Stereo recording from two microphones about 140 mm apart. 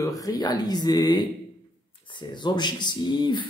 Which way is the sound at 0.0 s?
25° left (ahead or behind).